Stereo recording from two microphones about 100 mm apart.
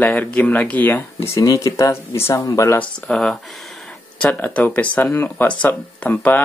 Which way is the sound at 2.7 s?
5° left (ahead or behind).